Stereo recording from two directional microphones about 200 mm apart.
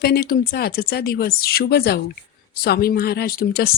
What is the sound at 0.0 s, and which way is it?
Speech, 50° left (ahead or behind).